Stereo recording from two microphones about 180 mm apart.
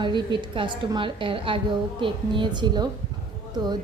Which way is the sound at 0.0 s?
25° right (ahead or behind).